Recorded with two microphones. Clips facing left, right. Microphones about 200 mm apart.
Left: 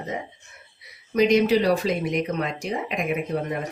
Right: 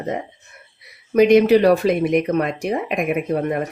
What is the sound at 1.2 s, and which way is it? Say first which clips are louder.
Speech: right 6 dB; 60° right (ahead or behind).